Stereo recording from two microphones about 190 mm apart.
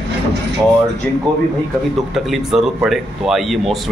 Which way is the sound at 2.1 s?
Centre (ahead or behind).